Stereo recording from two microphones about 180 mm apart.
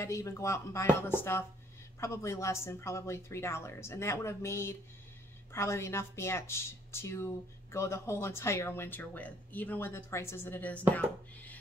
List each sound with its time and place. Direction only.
0.0 s speech: 15° left (ahead or behind)